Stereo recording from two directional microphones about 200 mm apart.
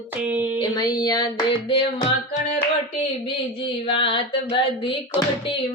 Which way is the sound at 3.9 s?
25° left (ahead or behind).